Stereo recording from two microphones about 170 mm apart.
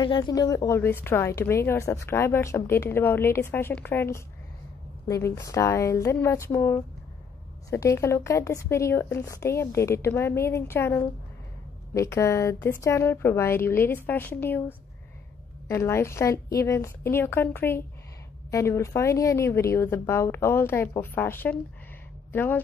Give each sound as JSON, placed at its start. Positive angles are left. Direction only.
{"t": 0.0, "sound": "a woman's voice", "side_deg": 25}
{"t": 15.7, "sound": "a woman's voice", "side_deg": 15}